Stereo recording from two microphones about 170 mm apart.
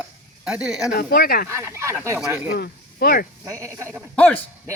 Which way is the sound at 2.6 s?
65° left (ahead or behind).